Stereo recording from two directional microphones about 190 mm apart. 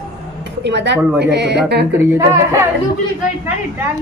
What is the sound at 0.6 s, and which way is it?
Speech, 65° right (ahead or behind).